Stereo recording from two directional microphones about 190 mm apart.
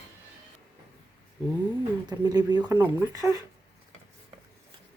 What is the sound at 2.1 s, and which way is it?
Speech, 20° right (ahead or behind).